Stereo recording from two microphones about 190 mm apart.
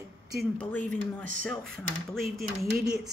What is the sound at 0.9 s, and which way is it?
Speech, 40° right (ahead or behind).